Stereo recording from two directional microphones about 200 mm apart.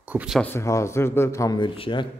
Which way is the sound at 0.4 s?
10° left (ahead or behind).